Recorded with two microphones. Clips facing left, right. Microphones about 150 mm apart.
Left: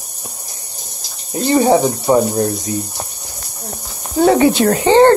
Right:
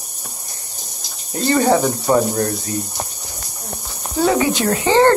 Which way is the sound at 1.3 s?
15° left (ahead or behind).